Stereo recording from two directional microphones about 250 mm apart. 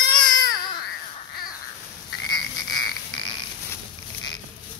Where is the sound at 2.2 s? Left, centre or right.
Centre.